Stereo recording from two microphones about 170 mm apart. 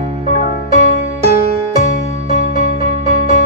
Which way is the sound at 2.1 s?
50° left (ahead or behind).